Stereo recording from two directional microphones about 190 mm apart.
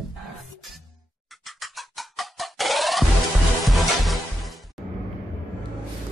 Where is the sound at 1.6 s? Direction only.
Centre (ahead or behind).